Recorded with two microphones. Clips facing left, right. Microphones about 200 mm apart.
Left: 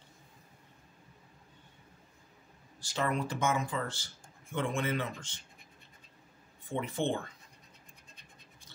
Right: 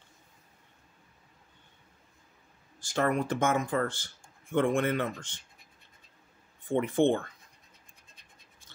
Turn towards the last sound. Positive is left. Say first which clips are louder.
# right 8 dB
turn(degrees=-55)  # may be behind; listen again after turning